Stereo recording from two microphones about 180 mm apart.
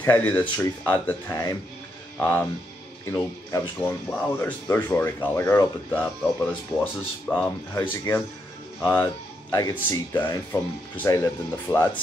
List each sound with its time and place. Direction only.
0.0 s speech: 10° left (ahead or behind)
7.7 s speech: 20° left (ahead or behind)